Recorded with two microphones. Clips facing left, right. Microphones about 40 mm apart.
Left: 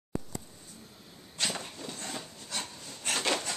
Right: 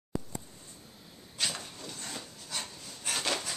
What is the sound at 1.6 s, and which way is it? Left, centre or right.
Wood, centre.